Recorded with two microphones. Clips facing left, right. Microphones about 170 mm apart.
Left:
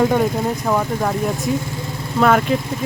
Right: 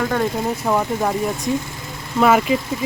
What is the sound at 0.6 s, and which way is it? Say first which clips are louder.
Speech: right 2 dB; 5° right (ahead or behind).